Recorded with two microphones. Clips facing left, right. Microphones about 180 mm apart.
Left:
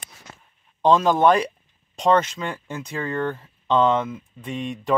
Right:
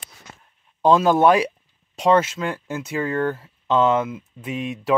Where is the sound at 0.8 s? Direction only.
5° right (ahead or behind).